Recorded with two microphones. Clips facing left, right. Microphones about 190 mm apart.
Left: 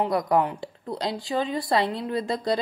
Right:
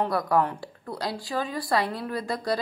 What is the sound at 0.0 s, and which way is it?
A woman's voice, 20° left (ahead or behind).